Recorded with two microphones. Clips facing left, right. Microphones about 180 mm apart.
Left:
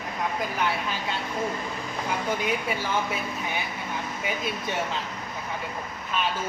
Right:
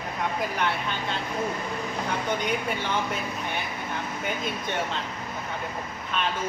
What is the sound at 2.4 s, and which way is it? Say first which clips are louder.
Speech: even; 5° left (ahead or behind).